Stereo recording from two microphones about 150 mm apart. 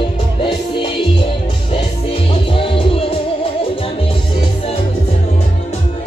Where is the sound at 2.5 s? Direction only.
35° left (ahead or behind).